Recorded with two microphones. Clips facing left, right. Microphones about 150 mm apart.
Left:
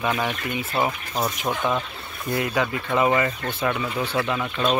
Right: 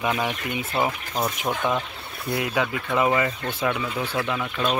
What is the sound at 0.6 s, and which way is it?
Speech, centre (ahead or behind).